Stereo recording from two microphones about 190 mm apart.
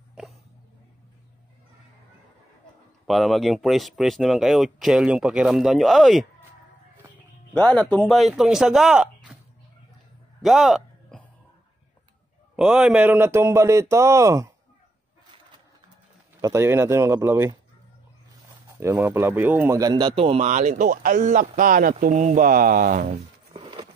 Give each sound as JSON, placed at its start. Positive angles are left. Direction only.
{"t": 3.1, "sound": "speech", "side_deg": 0}
{"t": 7.5, "sound": "speech", "side_deg": 5}
{"t": 10.4, "sound": "a sound", "side_deg": 0}
{"t": 12.5, "sound": "speech", "side_deg": -5}
{"t": 16.3, "sound": "speech", "side_deg": -15}
{"t": 18.8, "sound": "a man's voice", "side_deg": -10}